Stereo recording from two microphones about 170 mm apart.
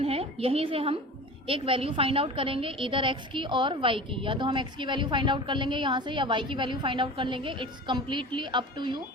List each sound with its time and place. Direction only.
0.0 s a woman's voice: 35° right (ahead or behind)